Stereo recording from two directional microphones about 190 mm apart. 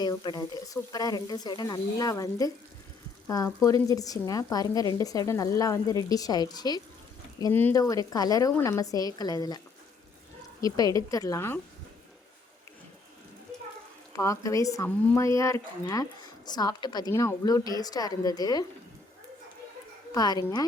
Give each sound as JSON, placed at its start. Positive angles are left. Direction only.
{"t": 0.0, "sound": "a woman's voice", "side_deg": 20}
{"t": 10.6, "sound": "a woman's voice", "side_deg": 20}
{"t": 14.1, "sound": "a woman's voice", "side_deg": 15}
{"t": 20.1, "sound": "a woman's voice", "side_deg": 20}